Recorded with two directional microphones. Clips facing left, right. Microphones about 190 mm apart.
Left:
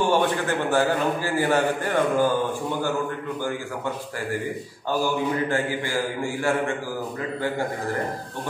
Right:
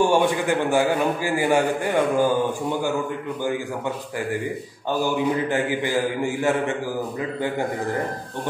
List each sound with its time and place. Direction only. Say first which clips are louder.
0.0 s a man's voice: right 3 dB; 15° right (ahead or behind)
5.0 s a man's voice: right 3 dB; 20° right (ahead or behind)